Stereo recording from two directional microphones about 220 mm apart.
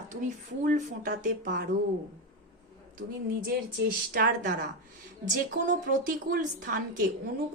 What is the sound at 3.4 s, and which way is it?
A woman's voice, 40° right (ahead or behind).